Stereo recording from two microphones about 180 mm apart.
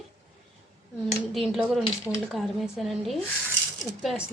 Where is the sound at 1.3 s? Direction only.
Centre (ahead or behind).